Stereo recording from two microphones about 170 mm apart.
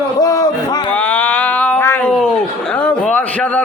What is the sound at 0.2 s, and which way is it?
Music, 20° left (ahead or behind).